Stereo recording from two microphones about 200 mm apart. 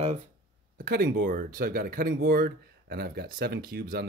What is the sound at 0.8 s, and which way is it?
Speech, 50° right (ahead or behind).